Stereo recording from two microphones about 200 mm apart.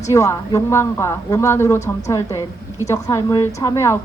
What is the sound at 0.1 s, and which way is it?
A woman's voice, 15° left (ahead or behind).